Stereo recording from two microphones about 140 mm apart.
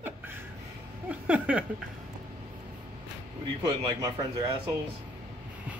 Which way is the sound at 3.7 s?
25° right (ahead or behind).